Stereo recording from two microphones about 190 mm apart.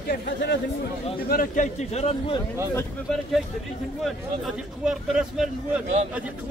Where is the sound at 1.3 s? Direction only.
45° left (ahead or behind).